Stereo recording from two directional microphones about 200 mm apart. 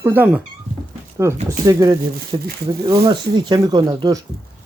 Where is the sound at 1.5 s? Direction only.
15° right (ahead or behind).